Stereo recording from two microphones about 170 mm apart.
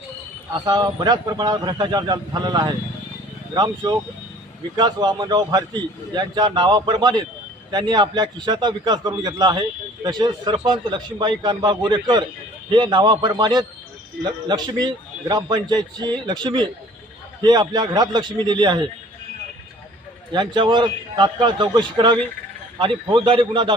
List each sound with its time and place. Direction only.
0.6 s a man's voice: 25° right (ahead or behind)
20.3 s a man's voice: 25° right (ahead or behind)